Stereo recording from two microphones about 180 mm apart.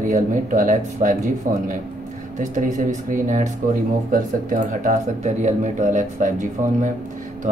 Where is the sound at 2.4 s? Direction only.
45° right (ahead or behind).